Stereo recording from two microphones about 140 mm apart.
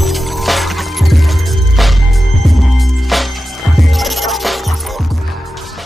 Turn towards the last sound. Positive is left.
turn(degrees=0)  # may be behind; listen again after turning